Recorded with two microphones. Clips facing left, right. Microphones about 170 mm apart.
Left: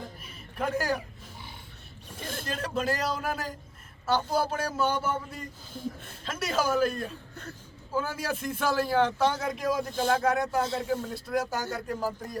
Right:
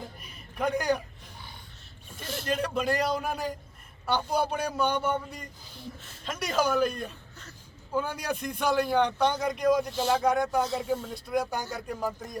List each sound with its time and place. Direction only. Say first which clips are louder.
0.2 s a sound: right 3 dB; centre (ahead or behind)
2.2 s vehicle: right 1 dB; 50° left (ahead or behind)
2.5 s speech: right 3 dB; centre (ahead or behind)
7.9 s speech: right 1 dB; 5° left (ahead or behind)